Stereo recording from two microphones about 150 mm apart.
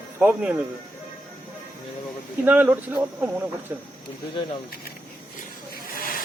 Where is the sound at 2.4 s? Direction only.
10° right (ahead or behind).